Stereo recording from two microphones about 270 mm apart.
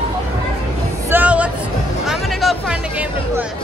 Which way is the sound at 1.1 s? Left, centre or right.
Centre.